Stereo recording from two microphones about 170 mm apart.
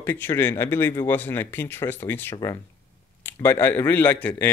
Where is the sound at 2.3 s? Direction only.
25° left (ahead or behind).